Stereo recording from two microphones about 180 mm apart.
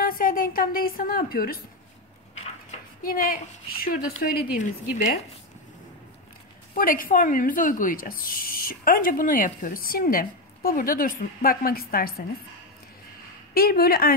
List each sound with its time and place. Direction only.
0.0 s a woman's voice: 50° left (ahead or behind)
2.3 s a sound: 40° left (ahead or behind)
3.1 s speech: 55° left (ahead or behind)
4.9 s speech: 45° left (ahead or behind)
6.7 s speech: 50° left (ahead or behind)
13.6 s speech: 55° left (ahead or behind)